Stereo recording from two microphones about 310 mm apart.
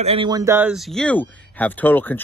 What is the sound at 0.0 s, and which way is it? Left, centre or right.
Speech, centre.